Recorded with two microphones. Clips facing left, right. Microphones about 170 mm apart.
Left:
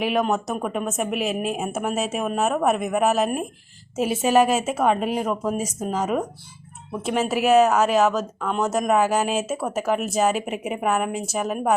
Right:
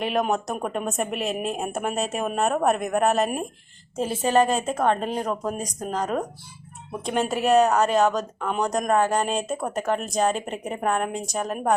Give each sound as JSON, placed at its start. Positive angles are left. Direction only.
{"t": 0.0, "sound": "a woman's voice", "side_deg": 0}